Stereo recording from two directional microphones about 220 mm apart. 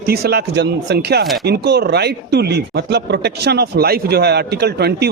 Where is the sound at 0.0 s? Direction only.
45° right (ahead or behind).